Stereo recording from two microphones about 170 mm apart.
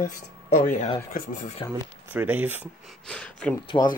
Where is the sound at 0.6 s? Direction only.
50° left (ahead or behind).